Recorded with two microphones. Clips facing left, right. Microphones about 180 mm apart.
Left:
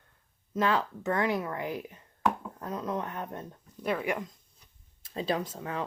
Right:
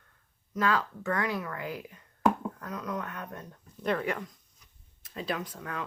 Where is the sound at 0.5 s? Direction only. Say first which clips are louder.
Left 1 dB; 25° left (ahead or behind).